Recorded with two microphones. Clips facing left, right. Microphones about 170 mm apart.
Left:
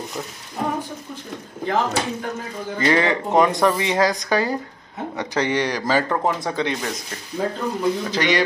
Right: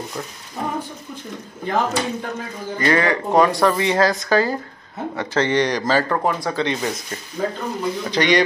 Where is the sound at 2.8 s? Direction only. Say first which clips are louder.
Even; 20° left (ahead or behind).